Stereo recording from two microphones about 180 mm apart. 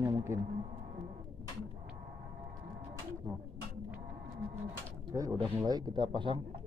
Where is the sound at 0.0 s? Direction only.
15° right (ahead or behind).